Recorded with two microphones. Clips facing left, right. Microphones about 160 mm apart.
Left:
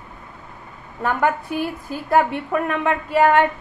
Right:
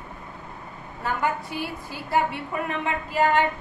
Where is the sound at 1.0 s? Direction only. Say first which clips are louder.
Left 6 dB; 55° left (ahead or behind).